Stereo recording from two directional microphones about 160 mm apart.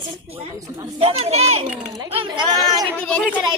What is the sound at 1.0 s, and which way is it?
Speech, 40° right (ahead or behind).